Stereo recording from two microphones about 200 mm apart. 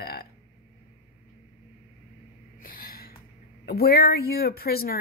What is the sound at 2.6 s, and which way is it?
Gasp, 45° left (ahead or behind).